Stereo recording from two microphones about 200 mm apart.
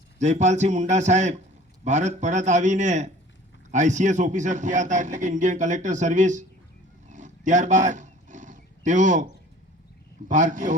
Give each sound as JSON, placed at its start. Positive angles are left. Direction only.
{"t": 0.2, "sound": "a man's voice", "side_deg": -35}
{"t": 7.1, "sound": "roaring cats", "side_deg": -40}
{"t": 10.2, "sound": "a man's voice", "side_deg": -40}